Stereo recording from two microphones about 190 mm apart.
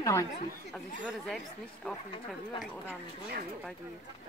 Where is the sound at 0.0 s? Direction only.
15° left (ahead or behind).